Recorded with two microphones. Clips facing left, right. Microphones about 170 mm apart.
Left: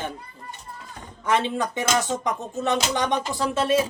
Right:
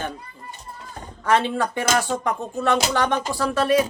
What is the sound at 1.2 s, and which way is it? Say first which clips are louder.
Speech: right 3 dB; 20° left (ahead or behind).